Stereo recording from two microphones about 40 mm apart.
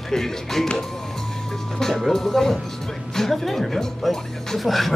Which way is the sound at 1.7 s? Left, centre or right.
Centre.